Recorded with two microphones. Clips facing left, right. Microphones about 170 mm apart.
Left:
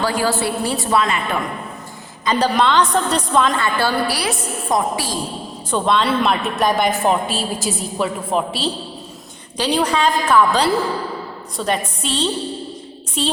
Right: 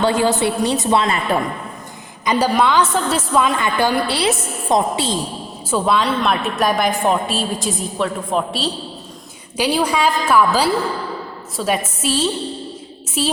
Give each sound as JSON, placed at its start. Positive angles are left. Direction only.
{"t": 0.0, "sound": "a woman's voice", "side_deg": -25}
{"t": 2.2, "sound": "a woman's voice", "side_deg": -10}
{"t": 3.6, "sound": "a woman's voice", "side_deg": -15}
{"t": 5.7, "sound": "a woman's voice", "side_deg": -5}
{"t": 9.6, "sound": "a woman's voice", "side_deg": -10}